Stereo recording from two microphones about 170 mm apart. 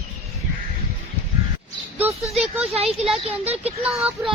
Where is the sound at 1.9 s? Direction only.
5° right (ahead or behind).